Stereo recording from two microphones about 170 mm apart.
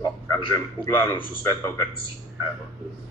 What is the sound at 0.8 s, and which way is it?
Speech, 10° left (ahead or behind).